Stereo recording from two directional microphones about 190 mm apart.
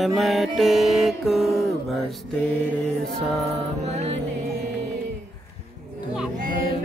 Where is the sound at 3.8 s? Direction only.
35° right (ahead or behind).